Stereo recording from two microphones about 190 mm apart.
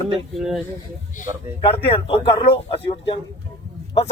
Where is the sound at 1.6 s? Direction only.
30° left (ahead or behind).